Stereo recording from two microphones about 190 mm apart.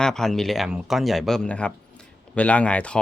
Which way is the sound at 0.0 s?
5° left (ahead or behind).